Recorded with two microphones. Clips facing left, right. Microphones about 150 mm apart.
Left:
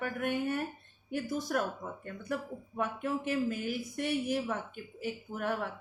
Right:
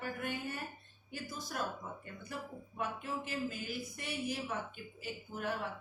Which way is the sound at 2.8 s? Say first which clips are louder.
Left 6 dB; 65° left (ahead or behind).